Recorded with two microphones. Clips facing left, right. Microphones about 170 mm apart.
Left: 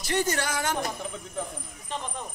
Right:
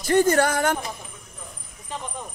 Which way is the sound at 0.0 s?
50° right (ahead or behind).